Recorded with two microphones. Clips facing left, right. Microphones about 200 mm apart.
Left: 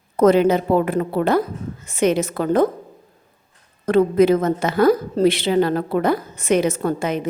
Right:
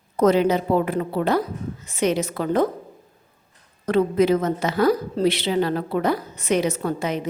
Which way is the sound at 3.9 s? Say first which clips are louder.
Left 4 dB; 50° left (ahead or behind).